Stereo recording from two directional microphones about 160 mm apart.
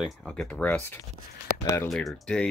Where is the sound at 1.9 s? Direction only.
Centre (ahead or behind).